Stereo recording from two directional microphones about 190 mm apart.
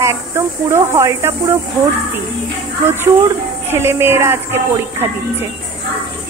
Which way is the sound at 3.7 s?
15° right (ahead or behind).